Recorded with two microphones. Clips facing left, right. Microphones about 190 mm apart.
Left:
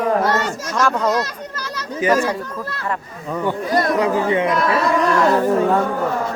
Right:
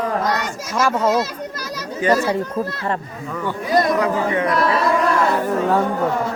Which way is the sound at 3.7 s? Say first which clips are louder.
Right 3 dB; 15° right (ahead or behind).